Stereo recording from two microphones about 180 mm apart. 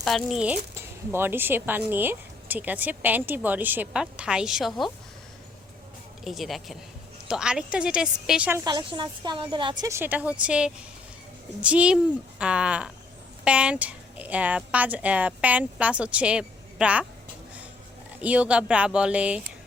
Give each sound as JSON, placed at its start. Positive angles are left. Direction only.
{"t": 0.0, "sound": "a woman's voice", "side_deg": 0}
{"t": 6.2, "sound": "a woman's voice", "side_deg": 0}
{"t": 8.6, "sound": "a woman's voice", "side_deg": -25}
{"t": 9.9, "sound": "a woman's voice", "side_deg": -10}
{"t": 18.2, "sound": "a woman's voice", "side_deg": -5}